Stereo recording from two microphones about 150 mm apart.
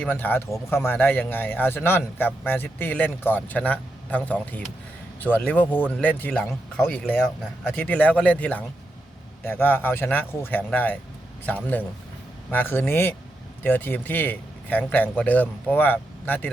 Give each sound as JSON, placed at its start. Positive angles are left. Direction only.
{"t": 0.0, "sound": "a man's voice", "side_deg": 10}